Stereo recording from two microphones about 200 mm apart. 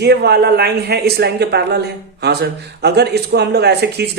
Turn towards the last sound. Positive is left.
turn(degrees=-55)  # may be behind; listen again after turning